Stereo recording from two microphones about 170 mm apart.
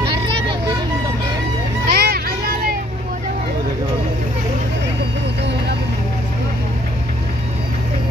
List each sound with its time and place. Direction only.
0.0 s vehicle: 30° right (ahead or behind)
1.9 s music: 65° right (ahead or behind)